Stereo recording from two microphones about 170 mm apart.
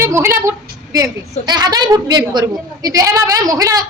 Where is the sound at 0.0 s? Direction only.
15° right (ahead or behind).